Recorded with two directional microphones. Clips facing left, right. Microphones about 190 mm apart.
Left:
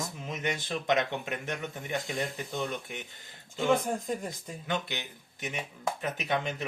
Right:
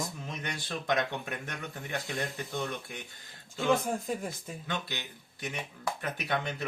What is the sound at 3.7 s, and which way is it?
Speech, centre (ahead or behind).